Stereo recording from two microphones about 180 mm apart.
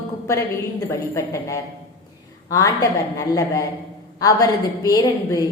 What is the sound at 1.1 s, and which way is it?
A woman's voice, 15° left (ahead or behind).